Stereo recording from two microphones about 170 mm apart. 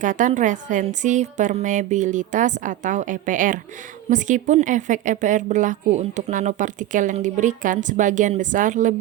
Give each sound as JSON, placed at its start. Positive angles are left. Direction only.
{"t": 0.0, "sound": "speech", "side_deg": -45}